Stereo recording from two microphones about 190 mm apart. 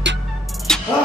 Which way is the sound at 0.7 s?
5° left (ahead or behind).